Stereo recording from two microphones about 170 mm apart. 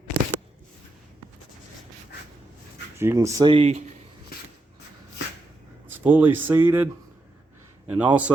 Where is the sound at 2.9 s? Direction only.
15° right (ahead or behind).